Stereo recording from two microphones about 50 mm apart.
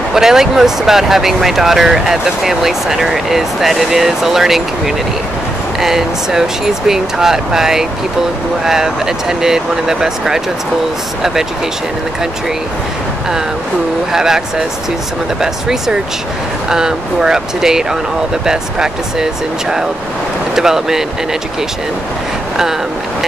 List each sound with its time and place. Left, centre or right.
0.1 s speech: centre
14.1 s speech: centre
15.4 s speech: centre
20.5 s speech: centre